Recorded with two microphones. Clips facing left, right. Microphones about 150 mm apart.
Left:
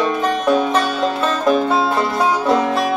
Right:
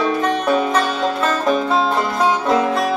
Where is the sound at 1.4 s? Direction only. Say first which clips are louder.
Left 3 dB; 5° left (ahead or behind).